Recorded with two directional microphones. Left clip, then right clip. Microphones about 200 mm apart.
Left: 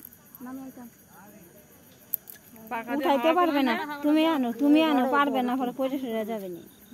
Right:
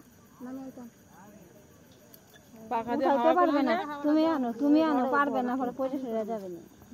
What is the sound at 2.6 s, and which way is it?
Speech, 35° right (ahead or behind).